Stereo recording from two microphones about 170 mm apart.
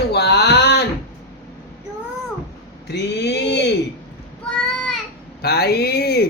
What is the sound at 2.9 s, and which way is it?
Speech, 85° left.